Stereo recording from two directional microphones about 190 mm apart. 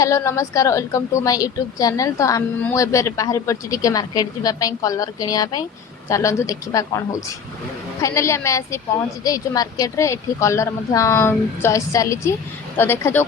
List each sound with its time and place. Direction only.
0.0 s a woman's voice: 15° left (ahead or behind)
8.0 s a woman's voice: 15° left (ahead or behind)